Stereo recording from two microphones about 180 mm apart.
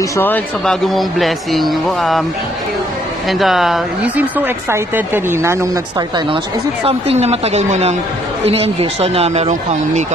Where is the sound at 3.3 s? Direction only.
Centre (ahead or behind).